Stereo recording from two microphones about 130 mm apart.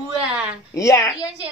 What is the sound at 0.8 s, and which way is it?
Speech, 25° left (ahead or behind).